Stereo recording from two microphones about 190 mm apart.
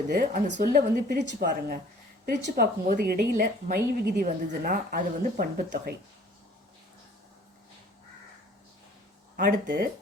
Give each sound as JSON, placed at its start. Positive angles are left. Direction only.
{"t": 0.1, "sound": "a woman's voice", "side_deg": -45}
{"t": 9.3, "sound": "speech", "side_deg": -50}